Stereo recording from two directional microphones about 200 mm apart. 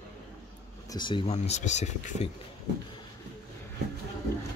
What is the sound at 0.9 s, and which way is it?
Speech, 25° left (ahead or behind).